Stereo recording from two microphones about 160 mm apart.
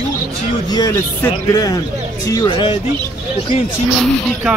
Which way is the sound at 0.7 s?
20° left (ahead or behind).